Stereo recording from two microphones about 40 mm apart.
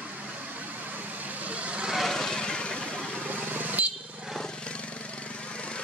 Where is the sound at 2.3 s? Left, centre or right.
Left.